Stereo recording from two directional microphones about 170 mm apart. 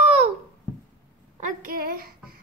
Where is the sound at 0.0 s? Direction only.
40° right (ahead or behind).